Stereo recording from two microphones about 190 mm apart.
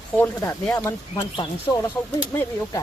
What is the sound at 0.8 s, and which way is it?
Speech, 20° left (ahead or behind).